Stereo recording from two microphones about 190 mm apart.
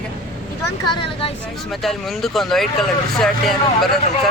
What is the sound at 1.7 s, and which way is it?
Speech, centre (ahead or behind).